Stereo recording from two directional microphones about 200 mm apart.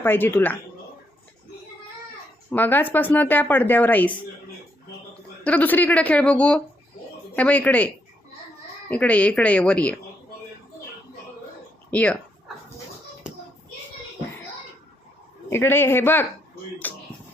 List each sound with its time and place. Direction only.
0.0 s speech: 10° left (ahead or behind)
2.5 s speech: 10° left (ahead or behind)
5.4 s speech: 5° left (ahead or behind)
8.9 s speech: 5° left (ahead or behind)
11.9 s speech: 5° left (ahead or behind)
15.4 s speech: 10° left (ahead or behind)
16.8 s a sound: 10° left (ahead or behind)